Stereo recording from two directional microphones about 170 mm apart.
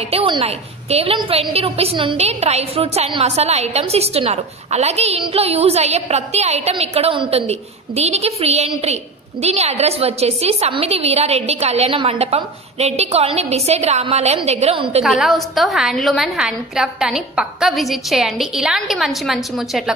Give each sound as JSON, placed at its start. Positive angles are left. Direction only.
{"t": 0.1, "sound": "a woman's voice", "side_deg": -35}
{"t": 15.0, "sound": "a woman's voice", "side_deg": 0}